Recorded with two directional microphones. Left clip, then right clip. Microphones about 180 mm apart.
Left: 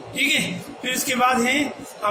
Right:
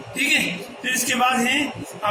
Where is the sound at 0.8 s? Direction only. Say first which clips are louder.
Even; 35° left (ahead or behind).